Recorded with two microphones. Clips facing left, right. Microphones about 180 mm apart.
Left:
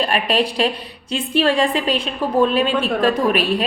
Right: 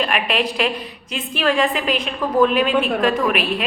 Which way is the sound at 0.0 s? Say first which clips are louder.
Left 2 dB; 35° left (ahead or behind).